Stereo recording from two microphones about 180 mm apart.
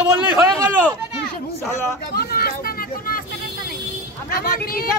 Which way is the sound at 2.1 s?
60° left (ahead or behind).